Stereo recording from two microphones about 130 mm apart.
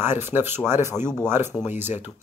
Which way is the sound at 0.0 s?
15° right (ahead or behind).